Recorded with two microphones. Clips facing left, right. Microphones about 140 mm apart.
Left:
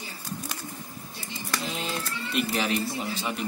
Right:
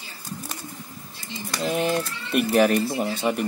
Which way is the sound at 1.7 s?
55° right (ahead or behind).